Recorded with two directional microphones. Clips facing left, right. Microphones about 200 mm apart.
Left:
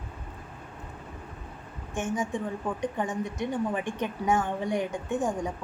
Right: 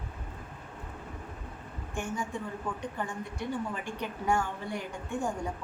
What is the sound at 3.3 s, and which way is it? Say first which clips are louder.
A woman's voice: left 3 dB; 20° left (ahead or behind).